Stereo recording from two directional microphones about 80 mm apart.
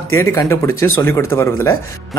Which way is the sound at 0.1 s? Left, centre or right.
Left.